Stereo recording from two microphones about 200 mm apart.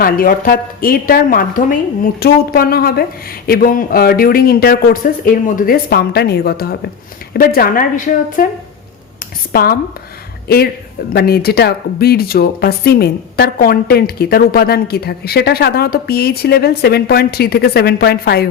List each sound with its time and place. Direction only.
0.0 s speech: 45° left (ahead or behind)
9.5 s speech: 50° left (ahead or behind)
11.1 s speech: 50° left (ahead or behind)